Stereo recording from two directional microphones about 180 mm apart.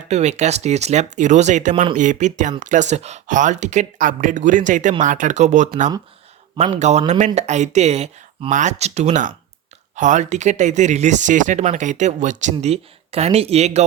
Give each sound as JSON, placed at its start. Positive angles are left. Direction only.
{"t": 0.1, "sound": "speech", "side_deg": -40}
{"t": 1.7, "sound": "speech", "side_deg": -25}
{"t": 2.0, "sound": "speech", "side_deg": -45}